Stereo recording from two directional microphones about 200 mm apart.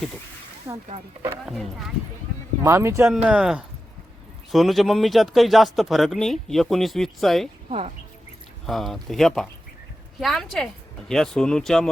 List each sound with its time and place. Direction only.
0.7 s speech: 20° right (ahead or behind)
1.5 s speech: centre (ahead or behind)
2.6 s speech: 15° right (ahead or behind)
7.7 s speech: 30° right (ahead or behind)
8.6 s speech: centre (ahead or behind)